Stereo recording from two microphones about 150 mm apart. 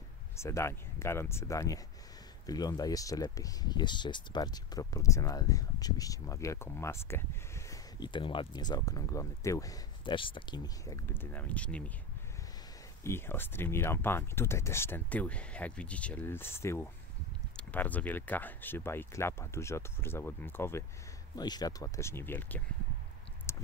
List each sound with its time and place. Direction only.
0.4 s speech: 20° left (ahead or behind)
10.1 s speech: 35° left (ahead or behind)
11.1 s speech: 10° left (ahead or behind)
13.0 s speech: 15° left (ahead or behind)
21.4 s speech: 25° left (ahead or behind)
23.5 s a sound: 20° left (ahead or behind)